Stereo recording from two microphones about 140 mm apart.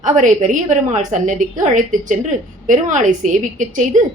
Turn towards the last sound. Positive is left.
turn(degrees=-65)  # may be behind; listen again after turning